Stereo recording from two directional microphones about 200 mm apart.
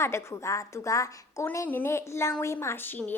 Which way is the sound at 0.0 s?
15° left (ahead or behind).